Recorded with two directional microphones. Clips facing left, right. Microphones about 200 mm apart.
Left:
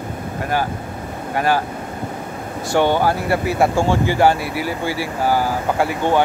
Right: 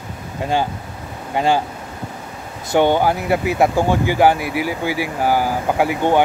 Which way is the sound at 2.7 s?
15° right (ahead or behind).